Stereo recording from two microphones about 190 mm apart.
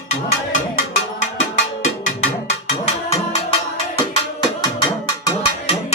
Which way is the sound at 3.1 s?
30° left (ahead or behind).